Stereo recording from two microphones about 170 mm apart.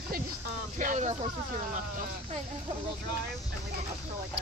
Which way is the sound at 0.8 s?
45° right (ahead or behind).